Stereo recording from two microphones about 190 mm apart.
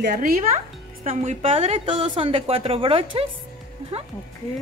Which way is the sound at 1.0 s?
35° right (ahead or behind).